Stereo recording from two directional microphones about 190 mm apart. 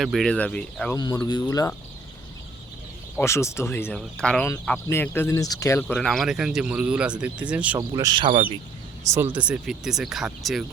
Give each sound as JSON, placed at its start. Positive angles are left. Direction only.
{"t": 0.0, "sound": "speech", "side_deg": 0}
{"t": 0.9, "sound": "speech", "side_deg": 20}
{"t": 3.2, "sound": "speech", "side_deg": 15}
{"t": 7.8, "sound": "speech", "side_deg": -20}